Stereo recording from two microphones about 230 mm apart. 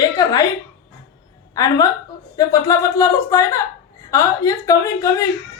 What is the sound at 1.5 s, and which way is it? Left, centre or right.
A woman's voice, centre.